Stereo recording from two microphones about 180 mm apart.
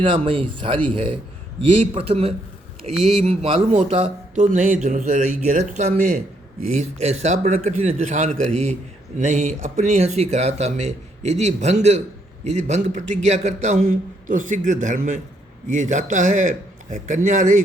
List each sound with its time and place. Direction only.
0.0 s speech: 25° right (ahead or behind)
4.4 s a man's voice: 45° right (ahead or behind)
7.0 s a man's voice: 35° right (ahead or behind)